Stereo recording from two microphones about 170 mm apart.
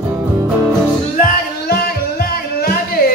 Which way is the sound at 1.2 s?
65° left (ahead or behind).